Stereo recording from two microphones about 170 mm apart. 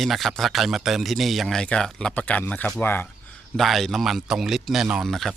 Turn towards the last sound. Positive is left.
turn(degrees=0)  # may be behind; listen again after turning